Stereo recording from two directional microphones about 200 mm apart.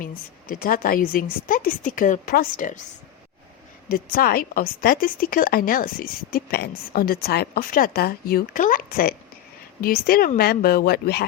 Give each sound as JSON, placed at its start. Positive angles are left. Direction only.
{"t": 0.4, "sound": "speech", "side_deg": 45}
{"t": 3.8, "sound": "speech", "side_deg": 45}